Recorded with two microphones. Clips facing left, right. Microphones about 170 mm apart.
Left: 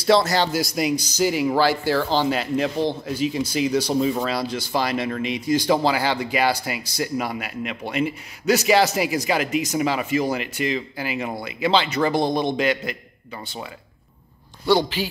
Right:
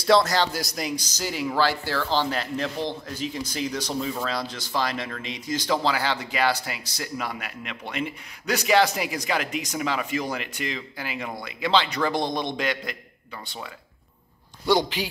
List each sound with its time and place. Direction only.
0.3 s speech: 5° left (ahead or behind)
3.9 s speech: 25° left (ahead or behind)
4.3 s speech: 10° left (ahead or behind)
14.7 s speech: 15° right (ahead or behind)